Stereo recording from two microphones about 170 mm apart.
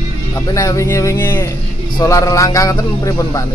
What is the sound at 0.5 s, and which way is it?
A man's voice, 20° left (ahead or behind).